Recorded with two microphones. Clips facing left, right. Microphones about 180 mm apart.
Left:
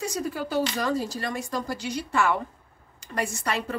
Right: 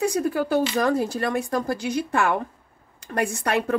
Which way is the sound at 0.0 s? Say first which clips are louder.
Right 7 dB; 55° right (ahead or behind).